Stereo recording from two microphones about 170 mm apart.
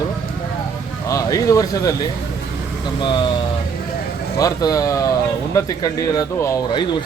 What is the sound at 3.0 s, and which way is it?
Speech, 30° left (ahead or behind).